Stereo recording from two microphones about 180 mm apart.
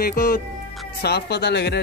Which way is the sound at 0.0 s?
55° left (ahead or behind).